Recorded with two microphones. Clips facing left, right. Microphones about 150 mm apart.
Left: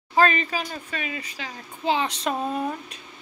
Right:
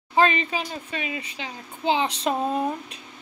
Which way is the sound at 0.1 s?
20° right (ahead or behind).